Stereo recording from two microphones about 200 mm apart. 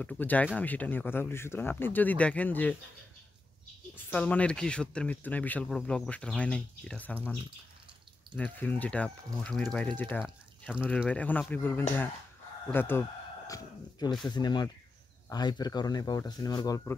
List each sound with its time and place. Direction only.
0.0 s speech: 5° left (ahead or behind)
3.9 s speech: 10° left (ahead or behind)
8.4 s speech: 10° left (ahead or behind)